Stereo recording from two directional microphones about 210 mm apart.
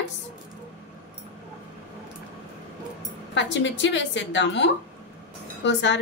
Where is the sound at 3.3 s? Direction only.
60° left (ahead or behind).